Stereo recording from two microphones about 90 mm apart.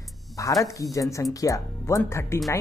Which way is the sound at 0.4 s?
35° left (ahead or behind).